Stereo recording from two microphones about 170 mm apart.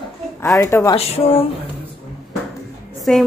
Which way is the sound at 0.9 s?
35° left (ahead or behind).